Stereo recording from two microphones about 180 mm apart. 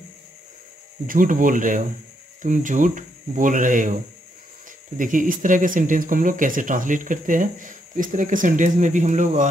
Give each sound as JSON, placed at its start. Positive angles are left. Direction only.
{"t": 1.0, "sound": "speech", "side_deg": -50}
{"t": 4.9, "sound": "speech", "side_deg": -45}